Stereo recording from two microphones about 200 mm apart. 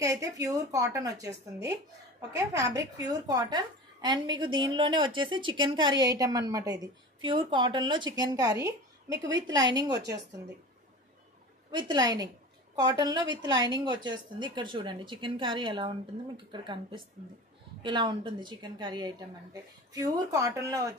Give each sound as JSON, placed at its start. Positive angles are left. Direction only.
{"t": 0.0, "sound": "a woman's voice", "side_deg": -15}
{"t": 11.7, "sound": "a woman's voice", "side_deg": -20}